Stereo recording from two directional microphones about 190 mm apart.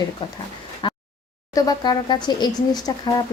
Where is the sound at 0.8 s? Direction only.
25° left (ahead or behind).